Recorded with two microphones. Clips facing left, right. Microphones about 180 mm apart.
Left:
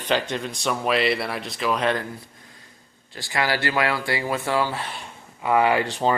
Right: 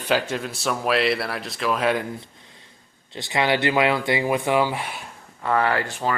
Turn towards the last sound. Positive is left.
turn(degrees=20)  # may be behind; listen again after turning